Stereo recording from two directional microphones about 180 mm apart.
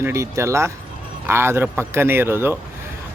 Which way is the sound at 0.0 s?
15° right (ahead or behind).